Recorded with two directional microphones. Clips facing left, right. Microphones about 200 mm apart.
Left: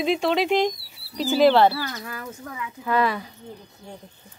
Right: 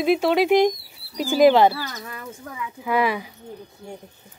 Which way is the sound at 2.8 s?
10° right (ahead or behind).